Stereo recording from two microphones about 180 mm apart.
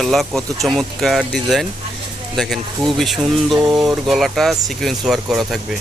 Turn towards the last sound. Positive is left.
turn(degrees=0)  # may be behind; listen again after turning